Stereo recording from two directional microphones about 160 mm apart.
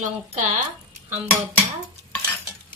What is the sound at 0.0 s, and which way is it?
Speech, 50° right (ahead or behind).